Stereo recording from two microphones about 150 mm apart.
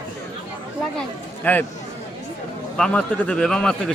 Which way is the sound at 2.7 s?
5° left (ahead or behind).